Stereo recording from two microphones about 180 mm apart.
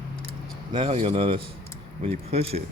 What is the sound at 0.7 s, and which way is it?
Speech, 30° right (ahead or behind).